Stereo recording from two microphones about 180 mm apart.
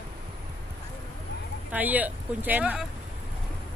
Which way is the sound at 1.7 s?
10° right (ahead or behind).